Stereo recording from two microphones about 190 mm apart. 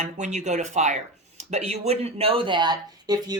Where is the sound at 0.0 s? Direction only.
40° right (ahead or behind).